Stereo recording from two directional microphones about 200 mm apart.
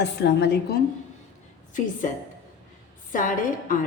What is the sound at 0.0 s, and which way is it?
Speech, 55° left (ahead or behind).